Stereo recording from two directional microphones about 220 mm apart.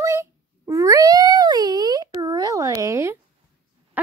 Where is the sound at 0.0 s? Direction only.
15° right (ahead or behind).